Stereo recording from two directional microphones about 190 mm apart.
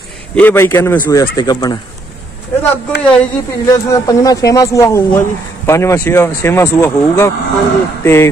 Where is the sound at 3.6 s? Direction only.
15° left (ahead or behind).